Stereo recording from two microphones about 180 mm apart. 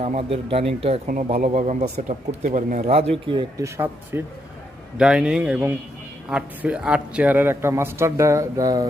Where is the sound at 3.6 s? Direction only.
15° right (ahead or behind).